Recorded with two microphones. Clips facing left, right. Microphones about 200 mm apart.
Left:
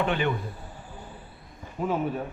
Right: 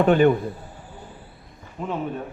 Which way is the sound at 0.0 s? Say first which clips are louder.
Right 10 dB; 45° right (ahead or behind).